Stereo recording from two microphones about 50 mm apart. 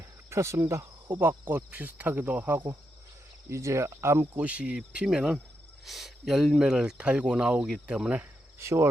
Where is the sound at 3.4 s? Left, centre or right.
Right.